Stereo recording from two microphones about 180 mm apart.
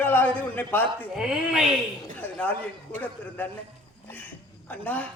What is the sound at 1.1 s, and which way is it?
Speech, 5° right (ahead or behind).